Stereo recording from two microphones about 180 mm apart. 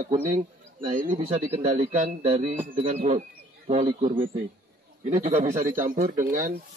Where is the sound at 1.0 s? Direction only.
45° right (ahead or behind); by 4.3 s 30° right (ahead or behind).